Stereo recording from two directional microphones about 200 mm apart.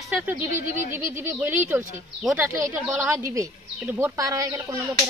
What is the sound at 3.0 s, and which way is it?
A woman's voice, 15° right (ahead or behind).